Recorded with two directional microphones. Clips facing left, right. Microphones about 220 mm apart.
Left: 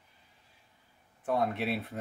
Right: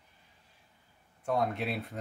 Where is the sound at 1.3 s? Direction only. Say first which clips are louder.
Left 1 dB; centre (ahead or behind).